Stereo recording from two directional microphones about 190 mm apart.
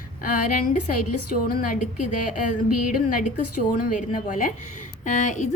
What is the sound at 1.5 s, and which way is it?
Speech, 45° left (ahead or behind).